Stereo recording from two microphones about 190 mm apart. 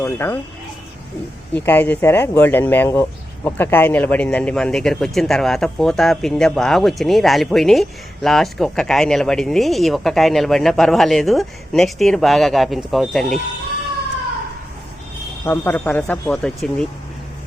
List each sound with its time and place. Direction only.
0.0 s speech: 15° left (ahead or behind)
1.5 s speech: 10° left (ahead or behind)
15.4 s speech: 10° left (ahead or behind)